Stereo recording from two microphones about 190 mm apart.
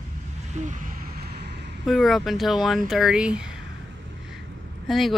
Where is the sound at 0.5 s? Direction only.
40° right (ahead or behind); by 1.4 s 55° right (ahead or behind).